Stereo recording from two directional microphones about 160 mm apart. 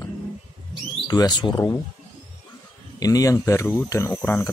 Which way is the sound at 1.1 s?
25° left (ahead or behind).